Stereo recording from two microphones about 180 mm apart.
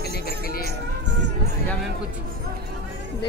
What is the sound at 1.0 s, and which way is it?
Speech, 80° right.